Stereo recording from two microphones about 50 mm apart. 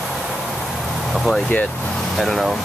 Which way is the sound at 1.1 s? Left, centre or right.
Centre.